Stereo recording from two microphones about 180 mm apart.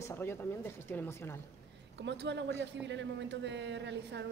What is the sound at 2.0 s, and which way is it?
A woman's voice, 80° right.